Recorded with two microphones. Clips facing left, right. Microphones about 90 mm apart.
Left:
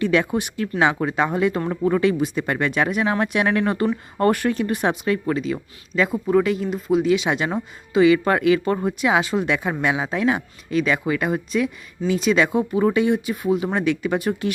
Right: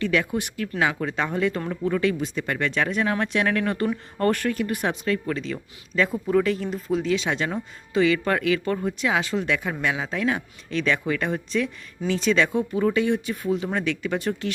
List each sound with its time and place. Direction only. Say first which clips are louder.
0.0 s speech: left 4 dB; 25° left (ahead or behind)